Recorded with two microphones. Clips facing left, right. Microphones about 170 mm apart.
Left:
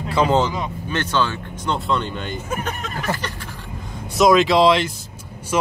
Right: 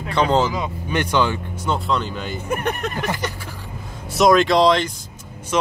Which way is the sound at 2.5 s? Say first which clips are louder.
Right 5 dB; 60° right (ahead or behind).